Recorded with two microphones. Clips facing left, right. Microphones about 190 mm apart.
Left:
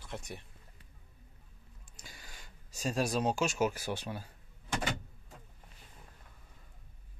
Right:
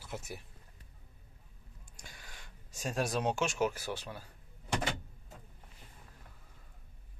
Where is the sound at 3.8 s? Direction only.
15° left (ahead or behind).